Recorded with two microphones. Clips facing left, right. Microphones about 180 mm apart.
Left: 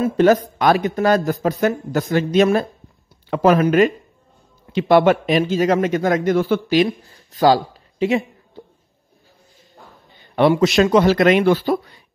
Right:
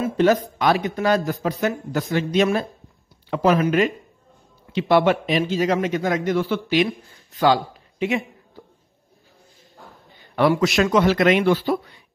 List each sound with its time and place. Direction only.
0.0 s a man's voice: 45° left (ahead or behind)
10.3 s a man's voice: 20° left (ahead or behind)
10.9 s speech: 35° left (ahead or behind)